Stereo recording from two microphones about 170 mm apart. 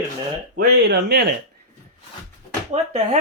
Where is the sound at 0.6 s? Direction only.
70° right (ahead or behind).